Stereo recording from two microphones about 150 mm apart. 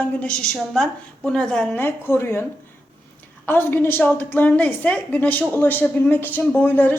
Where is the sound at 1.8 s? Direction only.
15° left (ahead or behind).